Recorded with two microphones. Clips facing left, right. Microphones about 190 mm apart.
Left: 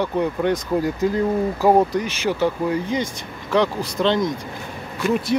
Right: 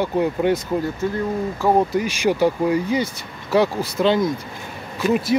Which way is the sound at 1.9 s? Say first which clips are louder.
Right 3 dB; 10° right (ahead or behind).